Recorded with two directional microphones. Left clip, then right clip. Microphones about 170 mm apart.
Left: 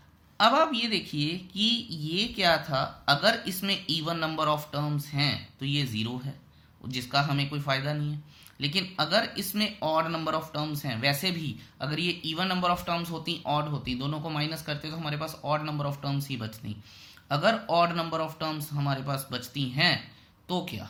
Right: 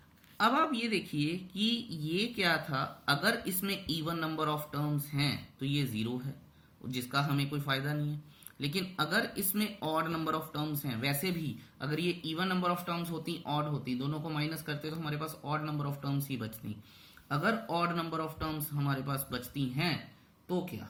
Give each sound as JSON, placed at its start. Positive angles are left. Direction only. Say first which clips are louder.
{"t": 0.3, "sound": "speech", "louder": "left 6 dB", "side_deg": 20}